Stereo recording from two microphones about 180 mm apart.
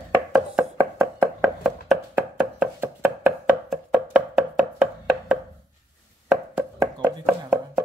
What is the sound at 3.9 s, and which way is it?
Music, 5° right (ahead or behind).